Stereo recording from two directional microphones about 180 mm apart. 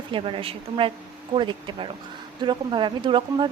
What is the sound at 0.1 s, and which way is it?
A woman's voice, 30° right (ahead or behind).